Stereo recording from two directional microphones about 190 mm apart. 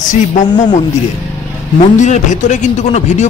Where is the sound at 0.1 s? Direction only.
40° left (ahead or behind).